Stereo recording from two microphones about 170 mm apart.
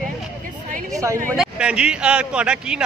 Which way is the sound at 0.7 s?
50° right (ahead or behind).